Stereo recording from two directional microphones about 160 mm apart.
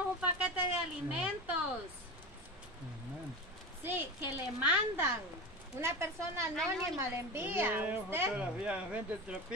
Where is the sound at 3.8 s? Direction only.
10° right (ahead or behind).